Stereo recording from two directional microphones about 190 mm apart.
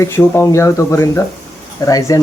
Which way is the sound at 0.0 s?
15° left (ahead or behind).